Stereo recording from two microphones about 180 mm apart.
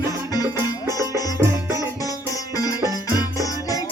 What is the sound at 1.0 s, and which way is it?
Music, 20° right (ahead or behind).